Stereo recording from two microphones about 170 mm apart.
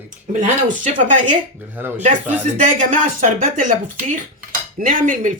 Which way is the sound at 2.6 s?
50° right (ahead or behind).